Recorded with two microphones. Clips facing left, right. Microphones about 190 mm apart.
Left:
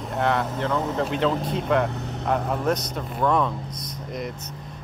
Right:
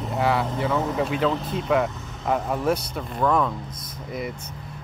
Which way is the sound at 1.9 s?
65° left (ahead or behind).